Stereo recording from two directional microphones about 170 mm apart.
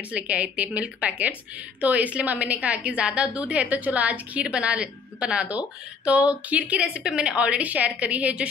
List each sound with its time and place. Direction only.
0.1 s a woman's voice: 10° right (ahead or behind)